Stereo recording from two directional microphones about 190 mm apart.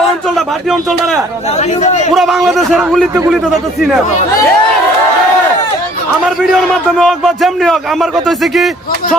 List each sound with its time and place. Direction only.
0.3 s a man's voice: centre (ahead or behind)
1.8 s a man's voice: 35° left (ahead or behind)
2.1 s a man's voice: centre (ahead or behind)
7.0 s a man's voice: centre (ahead or behind)